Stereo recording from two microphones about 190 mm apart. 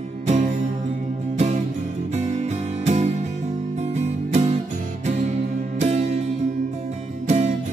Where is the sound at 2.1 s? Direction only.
35° right (ahead or behind).